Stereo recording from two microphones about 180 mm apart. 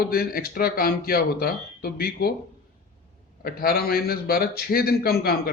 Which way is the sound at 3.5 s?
55° left (ahead or behind).